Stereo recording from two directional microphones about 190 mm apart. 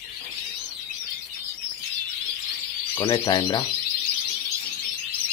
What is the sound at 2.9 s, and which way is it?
Speech, 20° left (ahead or behind).